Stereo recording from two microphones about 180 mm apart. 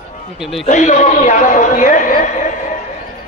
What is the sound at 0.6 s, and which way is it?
A man's voice, 45° left (ahead or behind).